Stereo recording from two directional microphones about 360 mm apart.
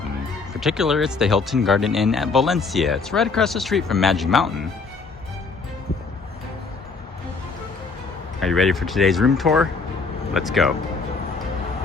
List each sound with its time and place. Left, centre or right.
0.6 s speech: centre
8.4 s speech: centre